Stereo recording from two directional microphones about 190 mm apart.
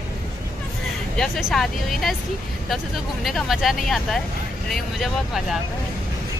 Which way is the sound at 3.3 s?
Centre (ahead or behind).